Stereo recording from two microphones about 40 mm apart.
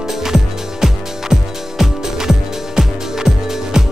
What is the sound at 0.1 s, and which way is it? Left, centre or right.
Music, centre.